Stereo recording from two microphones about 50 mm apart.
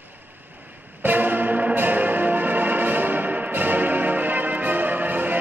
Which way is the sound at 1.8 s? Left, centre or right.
Right.